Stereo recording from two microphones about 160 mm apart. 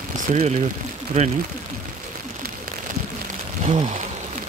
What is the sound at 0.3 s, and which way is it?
Speech, 45° right (ahead or behind).